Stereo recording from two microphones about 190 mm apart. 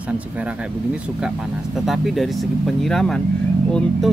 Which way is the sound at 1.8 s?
Centre (ahead or behind).